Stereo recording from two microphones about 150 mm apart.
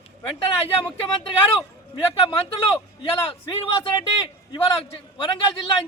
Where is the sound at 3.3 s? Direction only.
35° left (ahead or behind).